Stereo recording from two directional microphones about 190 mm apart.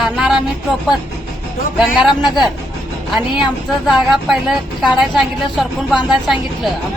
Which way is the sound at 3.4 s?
Centre (ahead or behind).